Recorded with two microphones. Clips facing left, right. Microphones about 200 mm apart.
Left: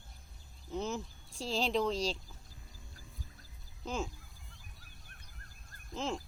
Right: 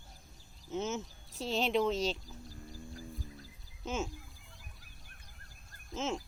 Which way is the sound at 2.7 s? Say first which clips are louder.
Right 9 dB; 45° right (ahead or behind).